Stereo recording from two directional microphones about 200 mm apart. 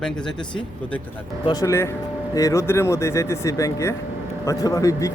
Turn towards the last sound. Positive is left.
turn(degrees=15)  # may be behind; listen again after turning